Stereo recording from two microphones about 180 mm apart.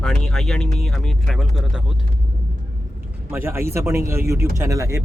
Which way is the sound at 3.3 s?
15° right (ahead or behind).